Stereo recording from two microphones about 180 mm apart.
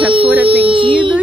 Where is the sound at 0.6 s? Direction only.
30° right (ahead or behind).